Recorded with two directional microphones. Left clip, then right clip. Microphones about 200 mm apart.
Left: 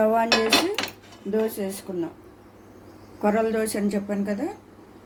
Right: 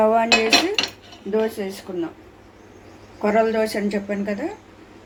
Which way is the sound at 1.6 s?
40° left (ahead or behind).